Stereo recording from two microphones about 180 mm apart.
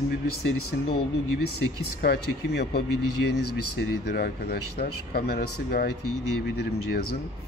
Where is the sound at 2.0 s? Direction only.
65° left (ahead or behind).